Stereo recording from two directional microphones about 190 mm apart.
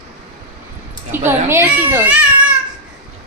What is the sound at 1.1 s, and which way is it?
A child's voice, 10° right (ahead or behind).